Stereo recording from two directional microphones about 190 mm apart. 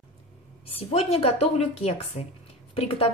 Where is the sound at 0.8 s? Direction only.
30° left (ahead or behind).